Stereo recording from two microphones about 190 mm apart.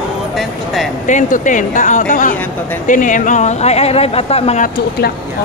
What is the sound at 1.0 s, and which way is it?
Speech, 40° left (ahead or behind).